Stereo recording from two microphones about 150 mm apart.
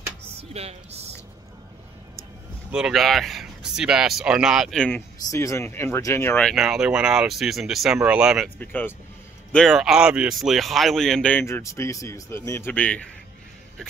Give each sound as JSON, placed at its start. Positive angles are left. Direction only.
{"t": 0.4, "sound": "speech", "side_deg": -45}
{"t": 2.7, "sound": "speech", "side_deg": -5}
{"t": 5.3, "sound": "speech", "side_deg": 20}
{"t": 6.5, "sound": "speech", "side_deg": 0}
{"t": 8.5, "sound": "speech", "side_deg": 10}